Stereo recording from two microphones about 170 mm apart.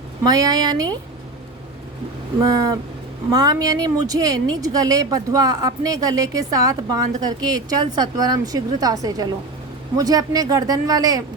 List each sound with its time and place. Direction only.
0.3 s speech: 20° right (ahead or behind)
2.4 s speech: 20° right (ahead or behind)